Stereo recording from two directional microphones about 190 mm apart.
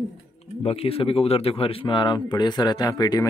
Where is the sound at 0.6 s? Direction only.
30° left (ahead or behind).